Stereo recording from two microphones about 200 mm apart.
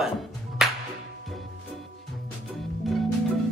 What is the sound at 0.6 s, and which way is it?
Music, centre (ahead or behind).